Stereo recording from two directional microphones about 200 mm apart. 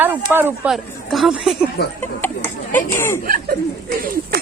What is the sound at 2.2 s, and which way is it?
Chatter, 10° left (ahead or behind).